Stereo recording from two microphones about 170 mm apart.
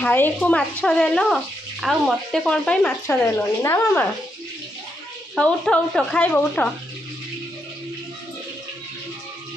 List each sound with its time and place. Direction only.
0.0 s speech: 10° left (ahead or behind)
5.3 s speech: 5° left (ahead or behind)